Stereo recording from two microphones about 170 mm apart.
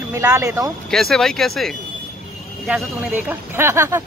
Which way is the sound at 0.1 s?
15° right (ahead or behind).